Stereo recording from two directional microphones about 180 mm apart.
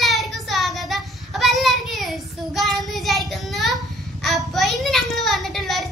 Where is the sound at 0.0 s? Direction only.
Centre (ahead or behind).